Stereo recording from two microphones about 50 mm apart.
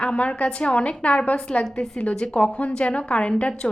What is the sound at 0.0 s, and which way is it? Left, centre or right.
A woman's voice, left.